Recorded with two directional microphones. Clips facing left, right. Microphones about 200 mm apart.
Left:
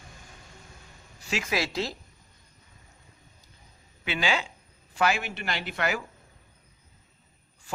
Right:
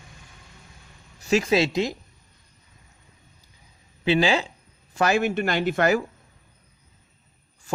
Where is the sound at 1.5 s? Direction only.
25° right (ahead or behind).